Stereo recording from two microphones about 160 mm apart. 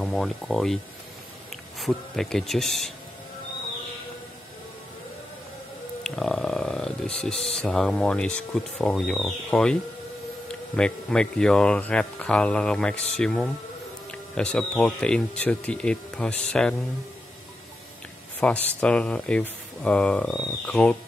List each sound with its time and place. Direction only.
0.0 s speech: centre (ahead or behind)
1.8 s speech: centre (ahead or behind)
6.0 s a sound: 5° left (ahead or behind)
7.2 s speech: 5° left (ahead or behind)
18.4 s speech: 5° left (ahead or behind)